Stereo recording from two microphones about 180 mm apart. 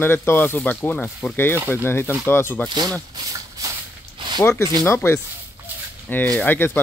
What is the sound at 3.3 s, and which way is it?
Shuffle, 20° right (ahead or behind).